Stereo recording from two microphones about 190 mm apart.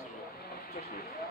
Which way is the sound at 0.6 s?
50° left (ahead or behind).